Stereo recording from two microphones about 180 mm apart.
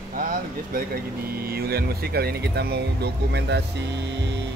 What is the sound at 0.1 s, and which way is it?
Vehicle, 50° right (ahead or behind).